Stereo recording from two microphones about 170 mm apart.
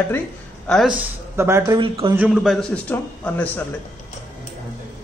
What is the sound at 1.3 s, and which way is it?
Speech, 15° right (ahead or behind).